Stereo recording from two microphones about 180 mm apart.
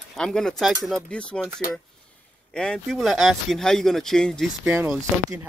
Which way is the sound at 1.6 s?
55° left (ahead or behind).